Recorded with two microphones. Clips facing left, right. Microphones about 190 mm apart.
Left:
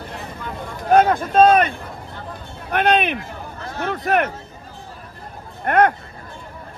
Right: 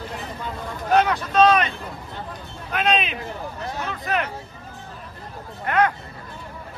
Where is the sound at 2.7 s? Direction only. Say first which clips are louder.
Left 5 dB; 60° left (ahead or behind).